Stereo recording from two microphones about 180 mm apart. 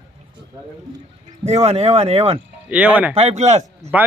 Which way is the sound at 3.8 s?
10° right (ahead or behind).